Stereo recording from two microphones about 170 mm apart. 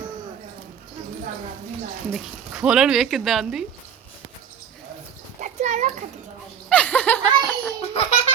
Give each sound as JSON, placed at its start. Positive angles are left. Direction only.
{"t": 2.1, "sound": "speech", "side_deg": 0}
{"t": 5.4, "sound": "a sound", "side_deg": -45}
{"t": 6.7, "sound": "laughter", "side_deg": 10}
{"t": 7.8, "sound": "baby laughter", "side_deg": 35}